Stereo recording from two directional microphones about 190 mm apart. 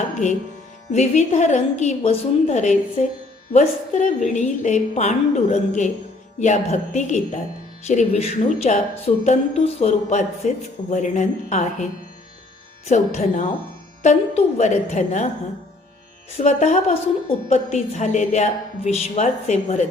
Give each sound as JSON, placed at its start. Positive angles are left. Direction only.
{"t": 0.9, "sound": "a woman's voice", "side_deg": 40}
{"t": 16.4, "sound": "a woman's voice", "side_deg": 35}